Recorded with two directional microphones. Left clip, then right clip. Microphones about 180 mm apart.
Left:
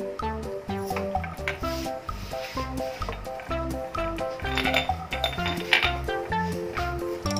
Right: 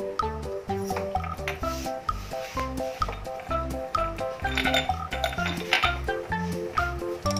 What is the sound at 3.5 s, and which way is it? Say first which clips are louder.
Music: right 3 dB; centre (ahead or behind).